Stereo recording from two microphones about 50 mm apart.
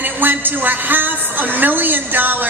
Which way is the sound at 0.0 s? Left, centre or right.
Right.